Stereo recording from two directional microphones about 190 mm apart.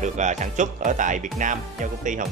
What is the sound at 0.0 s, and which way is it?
Speech, 40° right (ahead or behind).